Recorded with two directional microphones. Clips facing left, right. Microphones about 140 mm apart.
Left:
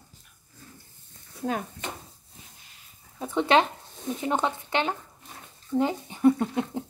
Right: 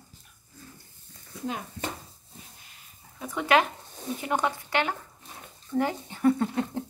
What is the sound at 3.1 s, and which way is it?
Speech, 30° left (ahead or behind).